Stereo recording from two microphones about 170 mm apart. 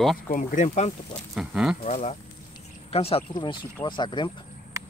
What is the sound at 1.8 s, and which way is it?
Speech, 45° left (ahead or behind).